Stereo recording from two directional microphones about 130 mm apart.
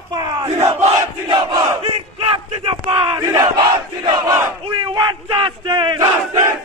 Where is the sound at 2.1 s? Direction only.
45° right (ahead or behind).